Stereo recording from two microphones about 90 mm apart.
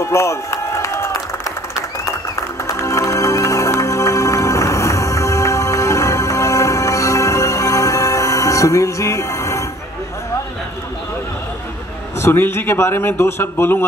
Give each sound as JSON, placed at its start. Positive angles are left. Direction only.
{"t": 0.0, "sound": "a sound", "side_deg": 35}
{"t": 2.6, "sound": "music", "side_deg": 35}
{"t": 12.2, "sound": "a man's voice", "side_deg": 25}